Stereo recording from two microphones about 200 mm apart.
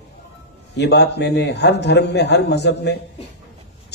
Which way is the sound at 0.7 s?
55° left (ahead or behind).